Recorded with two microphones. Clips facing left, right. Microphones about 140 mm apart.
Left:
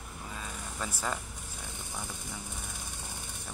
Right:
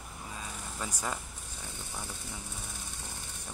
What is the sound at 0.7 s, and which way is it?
Speech, 15° right (ahead or behind).